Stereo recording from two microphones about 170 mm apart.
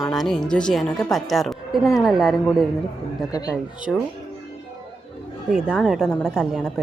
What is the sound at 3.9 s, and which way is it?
Speech, centre (ahead or behind).